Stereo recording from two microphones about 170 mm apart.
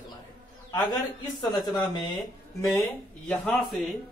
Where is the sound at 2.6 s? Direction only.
15° left (ahead or behind); by 3.9 s centre (ahead or behind).